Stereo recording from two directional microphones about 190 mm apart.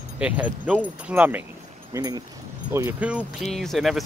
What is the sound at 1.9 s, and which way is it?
Speech, 20° right (ahead or behind).